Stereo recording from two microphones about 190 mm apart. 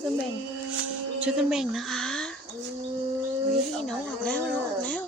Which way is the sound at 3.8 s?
5° left (ahead or behind).